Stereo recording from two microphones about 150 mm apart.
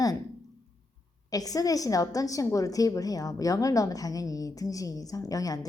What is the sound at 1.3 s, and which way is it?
A woman's voice, 25° left (ahead or behind).